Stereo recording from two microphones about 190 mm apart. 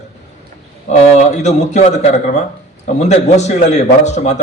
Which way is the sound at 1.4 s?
40° left (ahead or behind).